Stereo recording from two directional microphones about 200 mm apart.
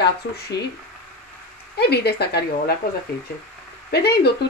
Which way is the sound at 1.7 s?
55° left (ahead or behind).